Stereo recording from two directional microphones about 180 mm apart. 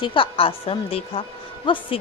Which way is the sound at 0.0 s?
30° left (ahead or behind).